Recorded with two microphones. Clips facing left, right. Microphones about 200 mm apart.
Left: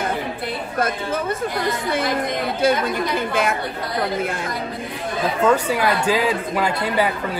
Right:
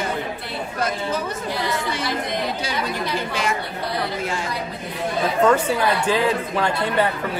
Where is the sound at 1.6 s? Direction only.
50° left (ahead or behind).